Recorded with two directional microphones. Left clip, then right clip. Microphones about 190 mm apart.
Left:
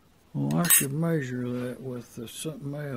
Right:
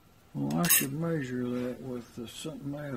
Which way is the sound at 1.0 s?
55° left (ahead or behind).